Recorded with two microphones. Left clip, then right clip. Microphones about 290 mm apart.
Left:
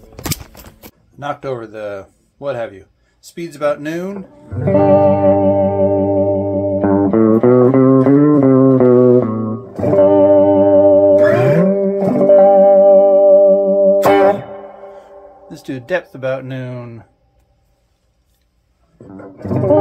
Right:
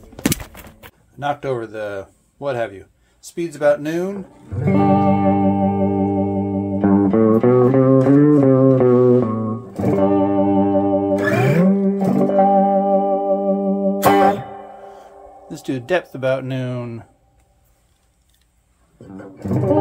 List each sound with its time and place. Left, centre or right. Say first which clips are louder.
1.2 s speech: right 1 dB; centre
4.5 s music: left 6 dB; left
15.4 s speech: right 2 dB; centre
19.0 s music: left 3 dB; left